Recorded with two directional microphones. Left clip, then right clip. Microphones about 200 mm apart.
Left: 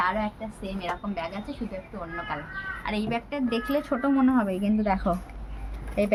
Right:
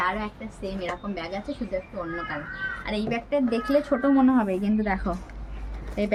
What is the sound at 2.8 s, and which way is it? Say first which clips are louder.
A woman's voice: right 1 dB; 10° left (ahead or behind).